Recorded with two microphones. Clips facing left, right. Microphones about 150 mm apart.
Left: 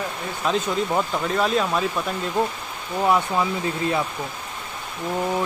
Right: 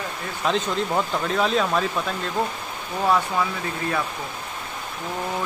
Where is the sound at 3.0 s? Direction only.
20° left (ahead or behind).